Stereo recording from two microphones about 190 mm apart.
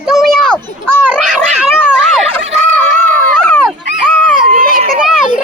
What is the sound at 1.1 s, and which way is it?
Cat, 5° right (ahead or behind).